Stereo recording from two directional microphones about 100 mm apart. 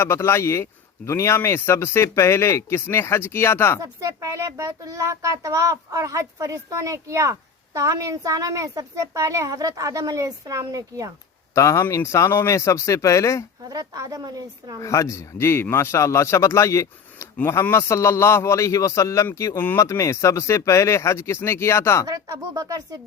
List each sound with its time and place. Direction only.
0.0 s a man's voice: 25° left (ahead or behind)
3.8 s speech: 35° right (ahead or behind)
11.5 s speech: 30° left (ahead or behind)
13.7 s speech: 40° right (ahead or behind)
14.8 s a man's voice: 30° left (ahead or behind)
22.0 s speech: 40° right (ahead or behind)